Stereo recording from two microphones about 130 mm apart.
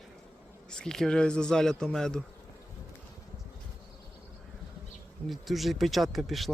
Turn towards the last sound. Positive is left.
turn(degrees=0)  # may be behind; listen again after turning